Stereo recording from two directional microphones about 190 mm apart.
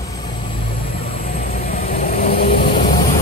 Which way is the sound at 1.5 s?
50° left (ahead or behind).